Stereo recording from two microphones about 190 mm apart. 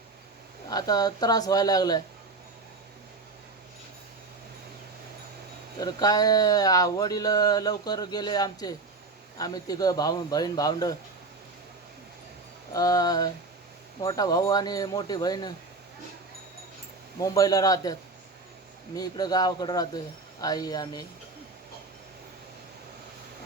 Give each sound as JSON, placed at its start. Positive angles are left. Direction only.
{"t": 0.7, "sound": "speech", "side_deg": 20}
{"t": 5.8, "sound": "speech", "side_deg": 20}
{"t": 12.7, "sound": "speech", "side_deg": 20}
{"t": 17.2, "sound": "speech", "side_deg": 20}
{"t": 18.9, "sound": "speech", "side_deg": 20}